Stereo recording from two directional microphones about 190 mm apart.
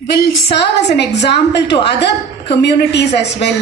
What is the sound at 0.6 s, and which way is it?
A woman's voice, 65° left (ahead or behind).